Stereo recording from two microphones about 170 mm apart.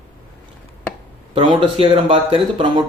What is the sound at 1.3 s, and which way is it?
Speech, 35° right (ahead or behind).